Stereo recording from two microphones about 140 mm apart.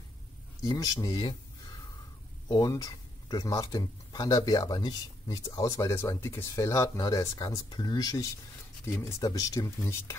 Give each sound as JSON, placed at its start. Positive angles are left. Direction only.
{"t": 0.6, "sound": "speech", "side_deg": 25}